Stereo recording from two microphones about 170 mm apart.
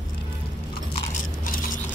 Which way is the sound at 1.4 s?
55° left (ahead or behind).